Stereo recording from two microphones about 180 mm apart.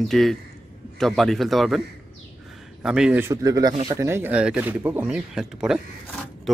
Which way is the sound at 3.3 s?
20° right (ahead or behind).